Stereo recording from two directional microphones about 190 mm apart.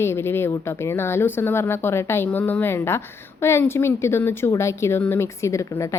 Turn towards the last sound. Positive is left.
turn(degrees=15)  # may be behind; listen again after turning